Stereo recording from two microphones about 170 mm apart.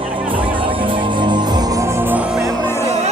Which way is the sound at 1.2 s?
25° right (ahead or behind).